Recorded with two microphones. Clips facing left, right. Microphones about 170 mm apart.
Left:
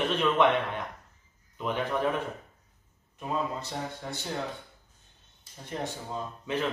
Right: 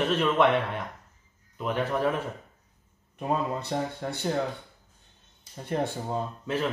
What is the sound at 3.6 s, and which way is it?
Speech, 60° right (ahead or behind).